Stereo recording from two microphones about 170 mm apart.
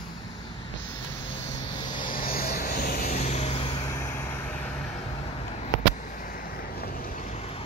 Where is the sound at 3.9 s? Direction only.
15° left (ahead or behind).